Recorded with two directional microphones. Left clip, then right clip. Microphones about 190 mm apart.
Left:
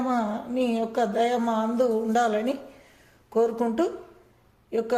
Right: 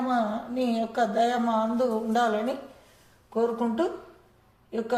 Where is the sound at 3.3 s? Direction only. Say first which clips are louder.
Left 3 dB; 65° left (ahead or behind).